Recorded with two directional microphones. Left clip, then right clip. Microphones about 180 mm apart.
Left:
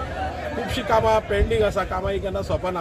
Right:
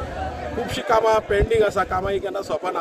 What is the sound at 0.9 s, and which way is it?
Speech, 30° right (ahead or behind).